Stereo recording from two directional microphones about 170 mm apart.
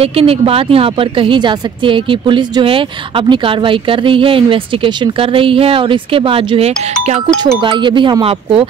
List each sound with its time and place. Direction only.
0.0 s speech: 35° right (ahead or behind)